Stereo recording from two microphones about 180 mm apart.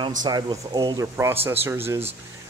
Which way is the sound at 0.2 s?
20° right (ahead or behind).